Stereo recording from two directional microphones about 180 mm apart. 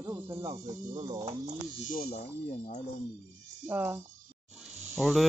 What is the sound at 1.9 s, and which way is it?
Speech, 55° left (ahead or behind).